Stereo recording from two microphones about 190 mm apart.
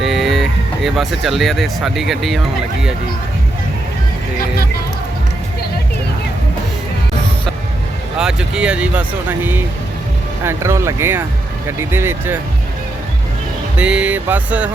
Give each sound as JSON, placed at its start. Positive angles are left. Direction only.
{"t": 0.0, "sound": "speech", "side_deg": 0}
{"t": 8.2, "sound": "speech", "side_deg": -5}
{"t": 13.7, "sound": "speech", "side_deg": -5}